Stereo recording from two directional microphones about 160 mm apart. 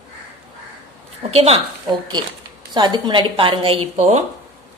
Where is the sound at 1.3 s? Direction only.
40° right (ahead or behind).